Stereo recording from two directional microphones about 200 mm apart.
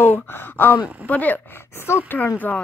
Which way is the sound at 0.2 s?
10° left (ahead or behind).